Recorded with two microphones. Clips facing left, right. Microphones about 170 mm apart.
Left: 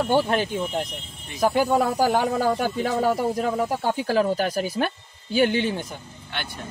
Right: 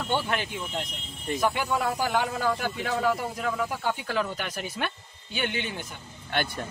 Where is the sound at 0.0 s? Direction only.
40° left (ahead or behind).